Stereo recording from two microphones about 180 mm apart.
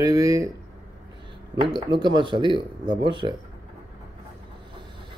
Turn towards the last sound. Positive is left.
turn(degrees=-25)  # may be behind; listen again after turning